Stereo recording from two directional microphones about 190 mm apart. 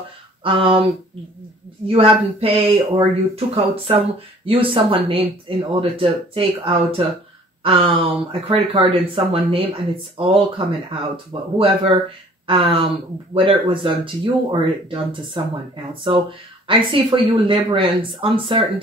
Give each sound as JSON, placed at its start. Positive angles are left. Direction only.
{"t": 0.4, "sound": "speech", "side_deg": -30}
{"t": 1.9, "sound": "speech", "side_deg": -30}
{"t": 11.5, "sound": "speech", "side_deg": -30}